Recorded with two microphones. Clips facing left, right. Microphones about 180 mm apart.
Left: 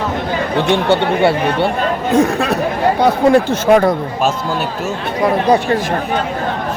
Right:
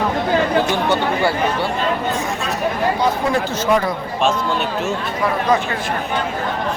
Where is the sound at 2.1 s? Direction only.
60° left (ahead or behind).